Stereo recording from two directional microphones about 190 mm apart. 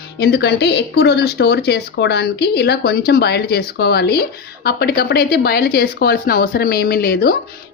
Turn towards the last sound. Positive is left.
turn(degrees=55)  # may be behind; listen again after turning